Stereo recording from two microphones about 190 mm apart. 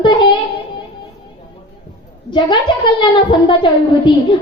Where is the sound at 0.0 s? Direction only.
25° left (ahead or behind).